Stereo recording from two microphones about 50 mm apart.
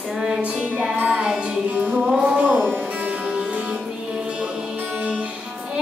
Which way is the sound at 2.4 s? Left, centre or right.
Right.